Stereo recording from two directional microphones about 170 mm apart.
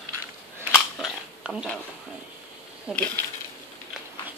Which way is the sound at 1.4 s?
5° right (ahead or behind).